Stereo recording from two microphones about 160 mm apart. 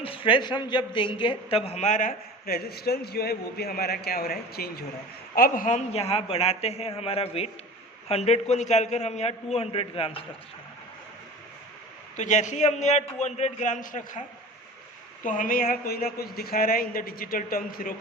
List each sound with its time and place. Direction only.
0.0 s a man's voice: 35° left (ahead or behind); by 4.9 s 75° left (ahead or behind)
5.3 s a man's voice: 65° left (ahead or behind); by 10.2 s 35° left (ahead or behind)
12.1 s a man's voice: 50° left (ahead or behind)
15.2 s a man's voice: 55° left (ahead or behind)